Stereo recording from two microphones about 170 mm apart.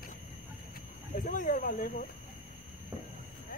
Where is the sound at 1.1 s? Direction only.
50° left (ahead or behind).